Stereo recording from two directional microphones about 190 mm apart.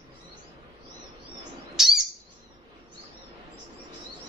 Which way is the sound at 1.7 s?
Centre (ahead or behind).